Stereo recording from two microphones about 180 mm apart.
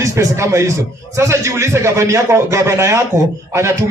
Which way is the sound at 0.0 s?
15° right (ahead or behind).